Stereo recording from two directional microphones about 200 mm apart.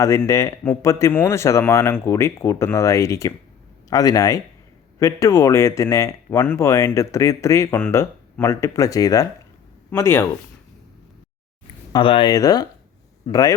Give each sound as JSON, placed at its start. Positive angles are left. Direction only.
{"t": 0.0, "sound": "speech", "side_deg": 15}
{"t": 11.9, "sound": "speech", "side_deg": 25}